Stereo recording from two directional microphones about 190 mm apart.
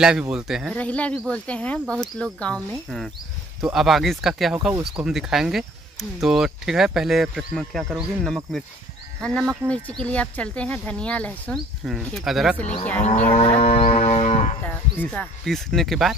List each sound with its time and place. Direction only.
0.0 s speech: 5° right (ahead or behind)
0.7 s speech: 5° left (ahead or behind)
13.3 s livestock: 30° left (ahead or behind)
14.6 s speech: 10° left (ahead or behind)